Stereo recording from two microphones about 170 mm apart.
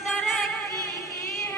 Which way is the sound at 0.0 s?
Centre (ahead or behind).